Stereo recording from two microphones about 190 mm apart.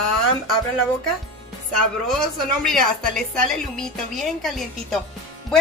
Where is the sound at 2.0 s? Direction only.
Centre (ahead or behind).